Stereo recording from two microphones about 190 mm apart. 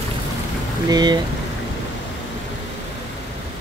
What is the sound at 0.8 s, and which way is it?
Speech, 20° right (ahead or behind).